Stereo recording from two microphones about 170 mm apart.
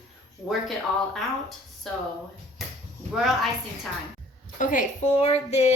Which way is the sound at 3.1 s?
Centre (ahead or behind).